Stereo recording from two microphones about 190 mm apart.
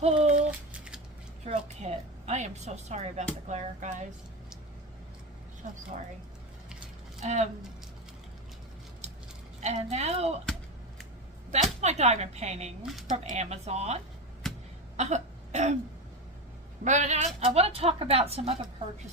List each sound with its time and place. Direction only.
0.0 s a woman's voice: 35° right (ahead or behind)
0.7 s scissors: 5° right (ahead or behind)
1.5 s a woman's voice: 35° right (ahead or behind)
7.2 s speech: 35° right (ahead or behind)
9.6 s a woman's voice: 35° right (ahead or behind)
10.4 s a sound: centre (ahead or behind)
11.5 s a woman's voice: 35° right (ahead or behind)
14.4 s a sound: centre (ahead or behind)
14.9 s throat clearing: 35° right (ahead or behind)
16.8 s a woman's voice: 40° right (ahead or behind)